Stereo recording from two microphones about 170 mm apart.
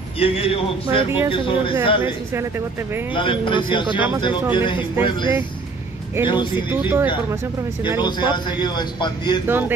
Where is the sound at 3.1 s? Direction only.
30° left (ahead or behind).